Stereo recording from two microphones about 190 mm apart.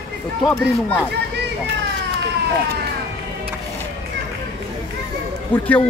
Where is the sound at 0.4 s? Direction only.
Centre (ahead or behind).